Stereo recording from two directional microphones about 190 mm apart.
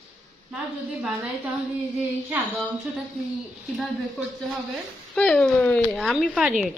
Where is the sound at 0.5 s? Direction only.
5° right (ahead or behind).